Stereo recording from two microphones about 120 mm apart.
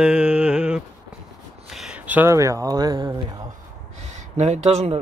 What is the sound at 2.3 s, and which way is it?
Speech, 30° right (ahead or behind).